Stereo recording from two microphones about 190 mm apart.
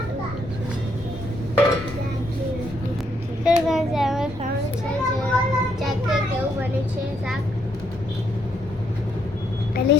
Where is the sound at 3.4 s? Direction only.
Centre (ahead or behind).